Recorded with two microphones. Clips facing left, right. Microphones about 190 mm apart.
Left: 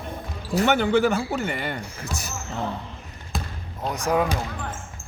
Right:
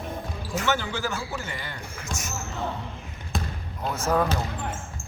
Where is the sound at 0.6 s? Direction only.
60° left (ahead or behind).